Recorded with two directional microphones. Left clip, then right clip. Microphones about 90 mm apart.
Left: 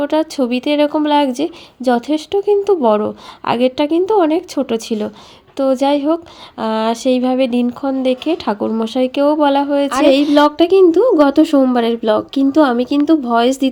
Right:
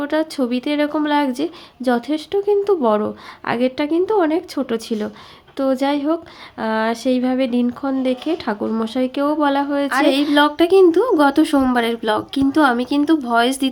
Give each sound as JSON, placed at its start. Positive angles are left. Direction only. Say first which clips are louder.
{"t": 0.0, "sound": "a woman's voice", "louder": "left 4 dB", "side_deg": 30}